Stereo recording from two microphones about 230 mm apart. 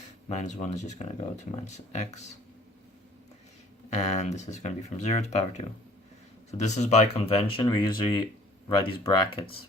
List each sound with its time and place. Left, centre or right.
0.3 s speech: left
3.8 s speech: left